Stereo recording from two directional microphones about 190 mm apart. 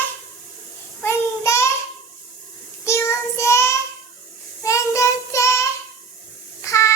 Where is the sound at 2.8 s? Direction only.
15° left (ahead or behind).